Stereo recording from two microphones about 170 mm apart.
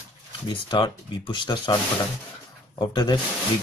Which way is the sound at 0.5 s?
25° left (ahead or behind).